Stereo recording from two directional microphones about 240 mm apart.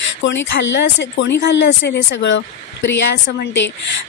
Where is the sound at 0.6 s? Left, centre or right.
Left.